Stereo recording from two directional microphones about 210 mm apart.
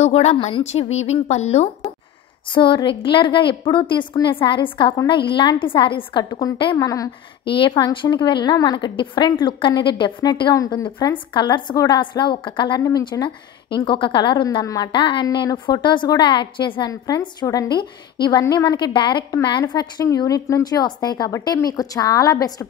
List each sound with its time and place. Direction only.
0.0 s a woman's voice: 30° left (ahead or behind); by 22.7 s 15° left (ahead or behind)